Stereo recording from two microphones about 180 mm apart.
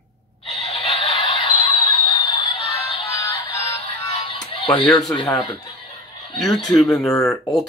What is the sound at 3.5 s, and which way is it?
Music, 15° left (ahead or behind).